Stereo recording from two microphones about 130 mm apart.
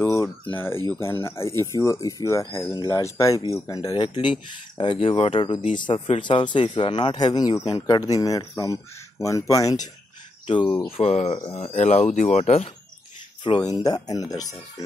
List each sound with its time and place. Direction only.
0.0 s a sound: 20° left (ahead or behind)
0.8 s speech: 20° left (ahead or behind)
10.4 s speech: 40° left (ahead or behind)
10.9 s speech: 55° left (ahead or behind)
13.4 s speech: 35° left (ahead or behind)